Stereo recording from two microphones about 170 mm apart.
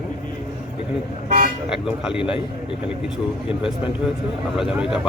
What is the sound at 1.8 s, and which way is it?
Speech, 5° right (ahead or behind).